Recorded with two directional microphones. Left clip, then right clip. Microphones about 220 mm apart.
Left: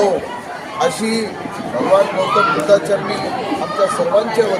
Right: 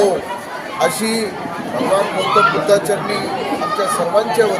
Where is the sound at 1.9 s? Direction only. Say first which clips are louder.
Left 2 dB; 20° right (ahead or behind).